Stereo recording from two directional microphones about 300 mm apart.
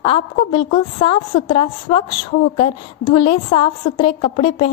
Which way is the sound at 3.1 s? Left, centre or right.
Centre.